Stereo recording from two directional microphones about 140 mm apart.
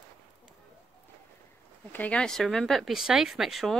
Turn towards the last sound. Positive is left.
turn(degrees=0)  # may be behind; listen again after turning